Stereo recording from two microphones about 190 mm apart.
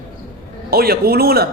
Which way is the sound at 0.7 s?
55° right (ahead or behind).